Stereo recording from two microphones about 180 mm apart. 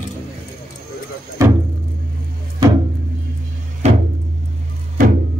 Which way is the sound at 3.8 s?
40° right (ahead or behind).